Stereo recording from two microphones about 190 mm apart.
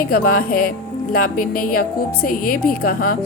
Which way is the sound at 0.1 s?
50° left (ahead or behind).